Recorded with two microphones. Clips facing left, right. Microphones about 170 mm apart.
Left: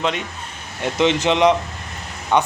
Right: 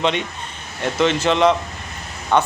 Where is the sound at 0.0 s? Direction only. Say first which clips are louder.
Right 2 dB; 5° left (ahead or behind).